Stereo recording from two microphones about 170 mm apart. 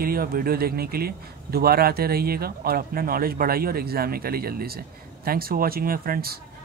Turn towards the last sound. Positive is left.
turn(degrees=-60)  # may be behind; listen again after turning